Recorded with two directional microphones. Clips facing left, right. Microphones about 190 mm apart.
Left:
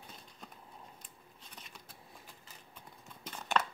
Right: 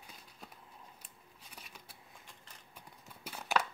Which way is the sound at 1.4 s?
10° right (ahead or behind).